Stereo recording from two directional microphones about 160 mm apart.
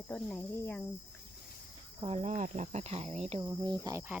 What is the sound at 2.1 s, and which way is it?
Cricket, 50° right (ahead or behind).